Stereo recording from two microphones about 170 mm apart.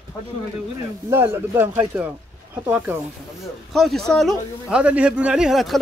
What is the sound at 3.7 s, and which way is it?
A man's voice, centre (ahead or behind).